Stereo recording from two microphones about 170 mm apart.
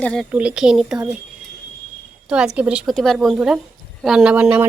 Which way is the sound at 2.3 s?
5° right (ahead or behind).